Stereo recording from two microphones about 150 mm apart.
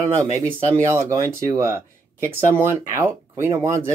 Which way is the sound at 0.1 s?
20° right (ahead or behind).